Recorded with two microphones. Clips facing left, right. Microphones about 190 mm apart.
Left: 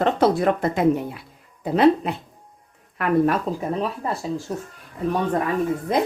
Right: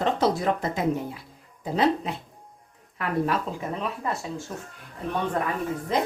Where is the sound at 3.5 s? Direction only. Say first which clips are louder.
Left 6 dB; 40° left (ahead or behind).